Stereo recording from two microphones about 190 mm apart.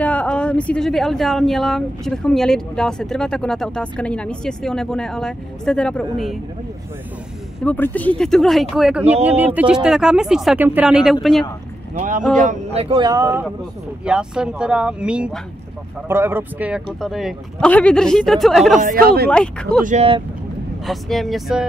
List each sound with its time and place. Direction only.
0.0 s speech: 5° left (ahead or behind)
7.6 s speech: 10° left (ahead or behind)
11.9 s speech: 40° right (ahead or behind)
12.8 s speech: 25° right (ahead or behind); by 18.8 s centre (ahead or behind)
18.8 s speech: 45° right (ahead or behind)
19.3 s speech: 5° left (ahead or behind)
19.8 s speech: 40° right (ahead or behind)
20.8 s speech: centre (ahead or behind)